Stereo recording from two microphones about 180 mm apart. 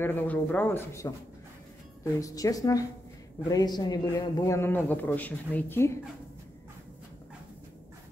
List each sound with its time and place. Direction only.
0.0 s a man's voice: 10° left (ahead or behind)
2.1 s a woman's voice: 20° left (ahead or behind)